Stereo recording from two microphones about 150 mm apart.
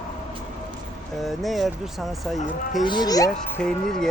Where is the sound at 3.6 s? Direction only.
5° left (ahead or behind).